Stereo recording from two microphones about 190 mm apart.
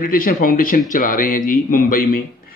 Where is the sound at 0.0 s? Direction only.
50° left (ahead or behind).